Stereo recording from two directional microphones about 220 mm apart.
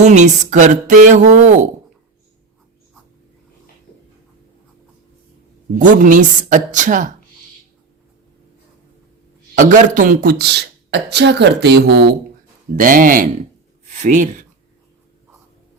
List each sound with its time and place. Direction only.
0.0 s speech: 35° right (ahead or behind)
5.8 s speech: 35° right (ahead or behind)
9.6 s speech: 35° right (ahead or behind)